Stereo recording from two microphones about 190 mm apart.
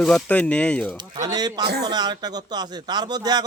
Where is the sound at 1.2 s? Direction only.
20° right (ahead or behind).